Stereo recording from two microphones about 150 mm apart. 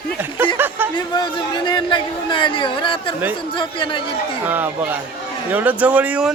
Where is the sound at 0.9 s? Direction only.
30° left (ahead or behind).